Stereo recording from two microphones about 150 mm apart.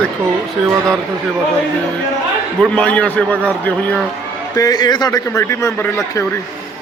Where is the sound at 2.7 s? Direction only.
10° left (ahead or behind).